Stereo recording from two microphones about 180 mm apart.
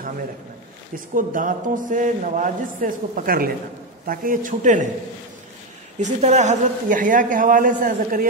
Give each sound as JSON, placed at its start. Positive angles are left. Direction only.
{"t": 0.9, "sound": "a man's voice", "side_deg": -50}
{"t": 5.9, "sound": "a man's voice", "side_deg": -40}